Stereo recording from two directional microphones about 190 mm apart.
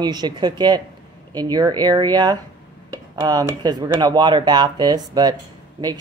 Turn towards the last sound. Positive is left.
turn(degrees=-20)  # may be behind; listen again after turning